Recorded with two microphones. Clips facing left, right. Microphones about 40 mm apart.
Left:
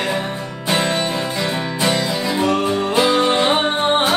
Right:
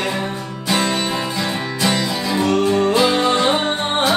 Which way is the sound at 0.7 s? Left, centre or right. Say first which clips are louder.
Even; left.